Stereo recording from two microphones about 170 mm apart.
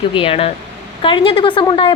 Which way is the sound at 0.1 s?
30° left (ahead or behind).